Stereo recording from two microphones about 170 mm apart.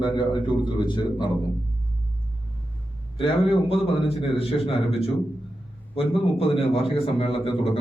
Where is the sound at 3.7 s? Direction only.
35° left (ahead or behind).